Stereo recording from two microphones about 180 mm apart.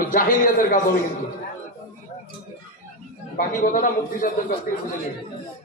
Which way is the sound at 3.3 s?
45° left (ahead or behind).